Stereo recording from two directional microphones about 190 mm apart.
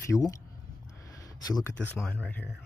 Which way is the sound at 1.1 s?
15° left (ahead or behind).